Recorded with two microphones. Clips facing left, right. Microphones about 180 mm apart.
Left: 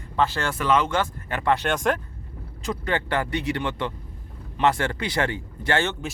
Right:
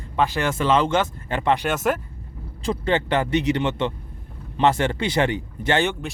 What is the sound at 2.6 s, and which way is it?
Speech, 30° right (ahead or behind).